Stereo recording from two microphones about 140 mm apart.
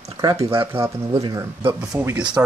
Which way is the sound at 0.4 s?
40° right (ahead or behind).